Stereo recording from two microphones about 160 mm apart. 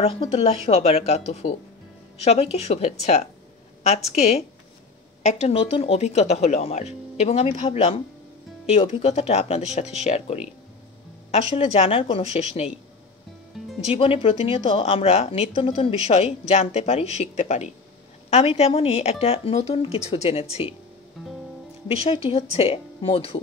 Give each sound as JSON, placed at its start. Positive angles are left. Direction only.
{"t": 0.0, "sound": "a woman's voice", "side_deg": 35}
{"t": 13.8, "sound": "a woman's voice", "side_deg": 35}
{"t": 21.8, "sound": "a woman's voice", "side_deg": 35}